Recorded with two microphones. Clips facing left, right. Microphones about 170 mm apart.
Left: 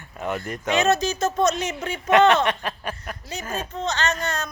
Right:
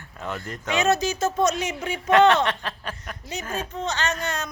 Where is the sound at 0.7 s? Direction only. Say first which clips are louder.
Left 1 dB; 10° right (ahead or behind).